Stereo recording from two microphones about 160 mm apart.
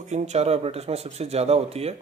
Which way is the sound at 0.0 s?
45° right (ahead or behind).